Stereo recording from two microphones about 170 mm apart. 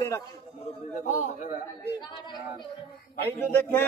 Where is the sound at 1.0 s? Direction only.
45° left (ahead or behind).